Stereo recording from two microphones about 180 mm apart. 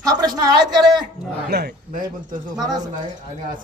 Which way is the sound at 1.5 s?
65° right (ahead or behind).